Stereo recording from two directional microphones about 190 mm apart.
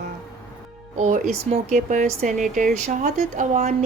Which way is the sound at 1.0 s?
40° right (ahead or behind).